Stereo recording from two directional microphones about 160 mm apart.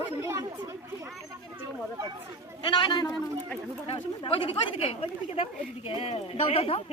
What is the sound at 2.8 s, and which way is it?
Speech, 25° left (ahead or behind).